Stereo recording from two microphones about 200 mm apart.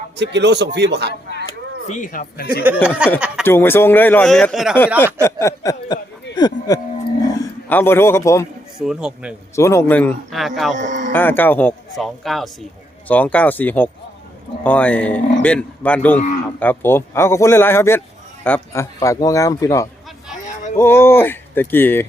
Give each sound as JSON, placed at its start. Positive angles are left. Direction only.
{"t": 0.2, "sound": "a man's voice", "side_deg": -60}
{"t": 1.9, "sound": "a man's voice", "side_deg": 40}
{"t": 2.8, "sound": "speech", "side_deg": -5}
{"t": 3.4, "sound": "speech", "side_deg": 10}
{"t": 5.2, "sound": "speech", "side_deg": 15}
{"t": 7.7, "sound": "speech", "side_deg": 10}
{"t": 8.8, "sound": "speech", "side_deg": -5}
{"t": 9.6, "sound": "speech", "side_deg": 15}
{"t": 10.8, "sound": "speech", "side_deg": -40}
{"t": 11.1, "sound": "speech", "side_deg": 10}